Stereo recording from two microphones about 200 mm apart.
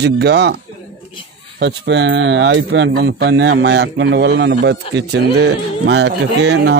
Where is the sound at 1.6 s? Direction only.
60° right (ahead or behind).